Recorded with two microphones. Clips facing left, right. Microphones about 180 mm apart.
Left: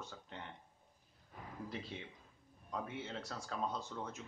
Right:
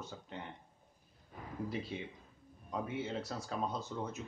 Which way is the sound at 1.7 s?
5° right (ahead or behind).